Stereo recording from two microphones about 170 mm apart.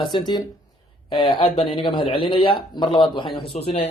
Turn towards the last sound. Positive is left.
turn(degrees=35)  # may be behind; listen again after turning